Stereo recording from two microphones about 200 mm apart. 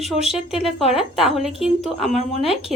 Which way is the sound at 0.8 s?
30° left (ahead or behind).